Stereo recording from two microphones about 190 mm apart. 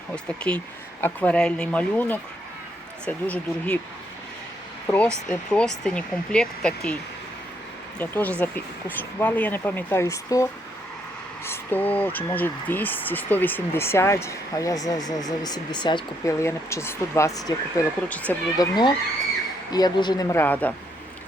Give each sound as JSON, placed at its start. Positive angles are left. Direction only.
{"t": 1.0, "sound": "speech", "side_deg": 5}
{"t": 4.9, "sound": "speech", "side_deg": 5}
{"t": 7.9, "sound": "speech", "side_deg": 10}
{"t": 18.1, "sound": "speech", "side_deg": 10}
{"t": 18.6, "sound": "speech", "side_deg": 20}